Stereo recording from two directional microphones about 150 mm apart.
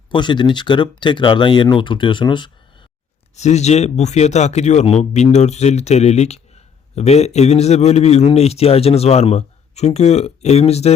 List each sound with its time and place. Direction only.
0.1 s speech: 30° left (ahead or behind)
3.3 s a man's voice: 50° left (ahead or behind)